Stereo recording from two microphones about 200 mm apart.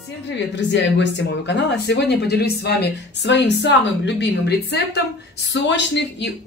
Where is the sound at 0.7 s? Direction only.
60° left (ahead or behind).